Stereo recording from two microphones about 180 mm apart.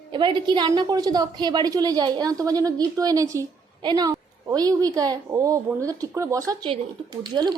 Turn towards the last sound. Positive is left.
turn(degrees=-25)  # may be behind; listen again after turning